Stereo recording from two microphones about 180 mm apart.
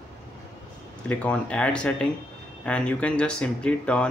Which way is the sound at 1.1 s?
5° left (ahead or behind).